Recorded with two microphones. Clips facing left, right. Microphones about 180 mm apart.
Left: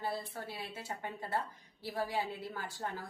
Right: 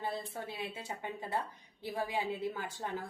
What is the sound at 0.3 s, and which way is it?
A woman's voice, 20° right (ahead or behind).